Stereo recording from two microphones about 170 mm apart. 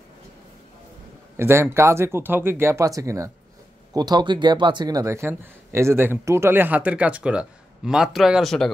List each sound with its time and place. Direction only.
1.3 s speech: 15° right (ahead or behind); by 8.7 s centre (ahead or behind)